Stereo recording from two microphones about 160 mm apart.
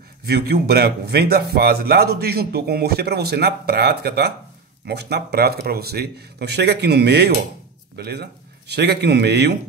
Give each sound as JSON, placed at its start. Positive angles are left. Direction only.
{"t": 0.2, "sound": "a man's voice", "side_deg": -80}